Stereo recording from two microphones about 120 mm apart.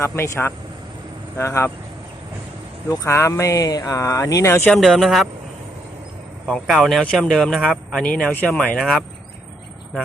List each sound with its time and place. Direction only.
0.0 s speech: 20° left (ahead or behind)
2.9 s speech: 25° left (ahead or behind)
4.7 s speech: centre (ahead or behind)
6.5 s speech: centre (ahead or behind)